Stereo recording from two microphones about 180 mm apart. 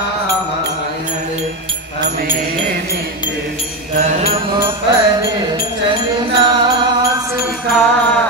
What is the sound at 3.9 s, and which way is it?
Mantra, 40° right (ahead or behind).